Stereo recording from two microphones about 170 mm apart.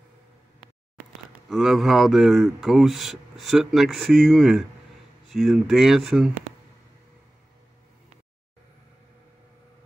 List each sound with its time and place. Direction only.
1.5 s speech: centre (ahead or behind)